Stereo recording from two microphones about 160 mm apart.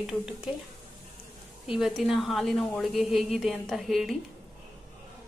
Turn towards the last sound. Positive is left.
turn(degrees=0)  # may be behind; listen again after turning